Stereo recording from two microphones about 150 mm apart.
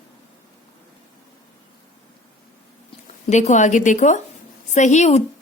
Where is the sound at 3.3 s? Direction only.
50° left (ahead or behind).